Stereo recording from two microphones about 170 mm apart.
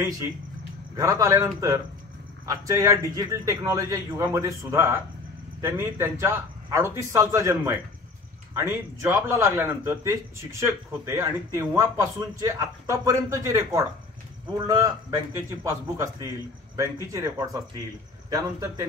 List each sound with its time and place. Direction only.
0.9 s a man's voice: 20° right (ahead or behind)